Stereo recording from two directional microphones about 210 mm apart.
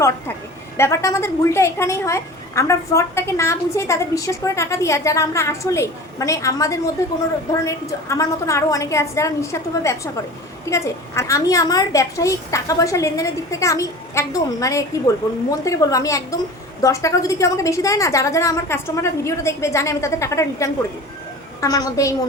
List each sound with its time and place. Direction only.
0.8 s a woman's voice: 15° left (ahead or behind)